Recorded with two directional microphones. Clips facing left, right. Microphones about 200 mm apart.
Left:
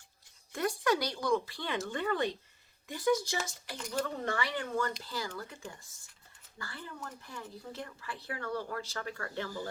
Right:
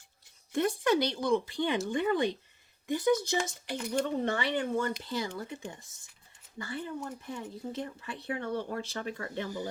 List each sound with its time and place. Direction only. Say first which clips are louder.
0.5 s speech: right 4 dB; 25° right (ahead or behind)